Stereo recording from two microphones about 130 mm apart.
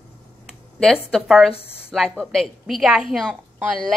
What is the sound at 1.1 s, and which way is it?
A woman's voice, centre (ahead or behind).